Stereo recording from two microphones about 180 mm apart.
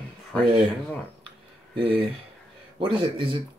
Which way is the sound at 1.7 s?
30° right (ahead or behind).